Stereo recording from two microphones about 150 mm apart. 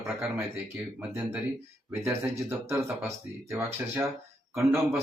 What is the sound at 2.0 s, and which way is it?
Speech, 15° right (ahead or behind).